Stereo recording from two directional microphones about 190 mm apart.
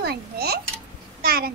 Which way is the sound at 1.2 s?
50° right (ahead or behind).